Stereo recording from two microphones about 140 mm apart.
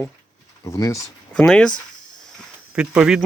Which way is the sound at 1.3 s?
5° left (ahead or behind).